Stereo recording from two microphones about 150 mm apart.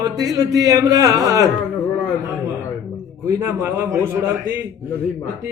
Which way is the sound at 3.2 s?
15° right (ahead or behind).